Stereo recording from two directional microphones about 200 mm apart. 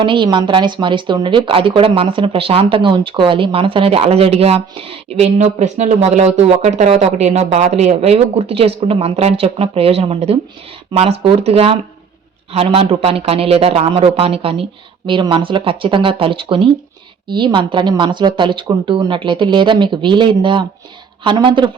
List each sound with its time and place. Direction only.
0.0 s a woman's voice: 25° right (ahead or behind)